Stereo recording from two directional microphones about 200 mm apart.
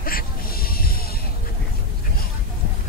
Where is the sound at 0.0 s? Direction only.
45° left (ahead or behind).